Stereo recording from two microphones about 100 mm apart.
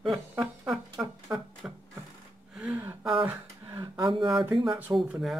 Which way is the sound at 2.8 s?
20° right (ahead or behind).